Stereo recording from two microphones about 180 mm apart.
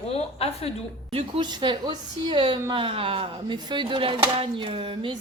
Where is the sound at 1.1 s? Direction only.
30° right (ahead or behind).